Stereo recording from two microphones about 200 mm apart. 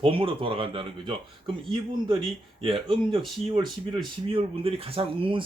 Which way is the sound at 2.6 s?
25° right (ahead or behind).